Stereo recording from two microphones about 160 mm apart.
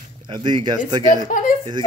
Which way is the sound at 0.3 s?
30° right (ahead or behind).